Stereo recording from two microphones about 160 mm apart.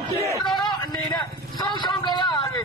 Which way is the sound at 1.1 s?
25° left (ahead or behind).